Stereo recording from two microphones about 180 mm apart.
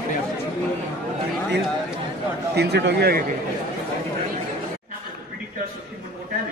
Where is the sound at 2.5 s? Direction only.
65° right (ahead or behind).